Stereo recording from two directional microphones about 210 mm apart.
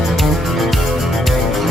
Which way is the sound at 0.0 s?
Centre (ahead or behind).